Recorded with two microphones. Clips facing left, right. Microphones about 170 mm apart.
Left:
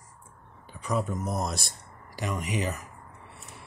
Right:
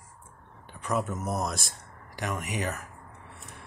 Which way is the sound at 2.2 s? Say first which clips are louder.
Left 1 dB; 60° right (ahead or behind).